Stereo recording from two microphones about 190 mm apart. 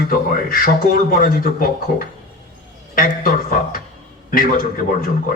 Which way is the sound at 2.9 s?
45° left (ahead or behind).